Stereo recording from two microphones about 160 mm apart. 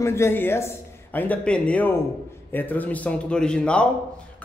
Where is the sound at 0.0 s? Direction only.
15° left (ahead or behind).